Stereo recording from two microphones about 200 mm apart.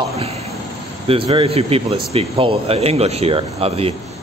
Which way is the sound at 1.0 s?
30° right (ahead or behind).